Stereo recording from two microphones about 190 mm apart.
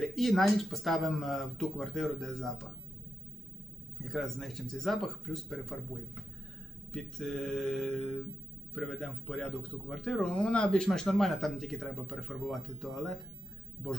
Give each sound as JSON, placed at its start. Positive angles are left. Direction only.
{"t": 0.0, "sound": "speech", "side_deg": 0}
{"t": 3.9, "sound": "speech", "side_deg": 0}